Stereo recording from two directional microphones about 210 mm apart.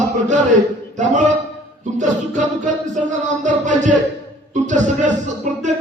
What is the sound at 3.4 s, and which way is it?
Speech, 35° right (ahead or behind).